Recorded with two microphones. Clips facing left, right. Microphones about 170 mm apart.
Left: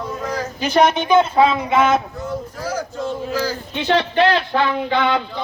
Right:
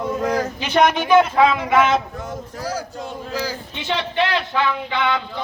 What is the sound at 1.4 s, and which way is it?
Speech, 30° left (ahead or behind).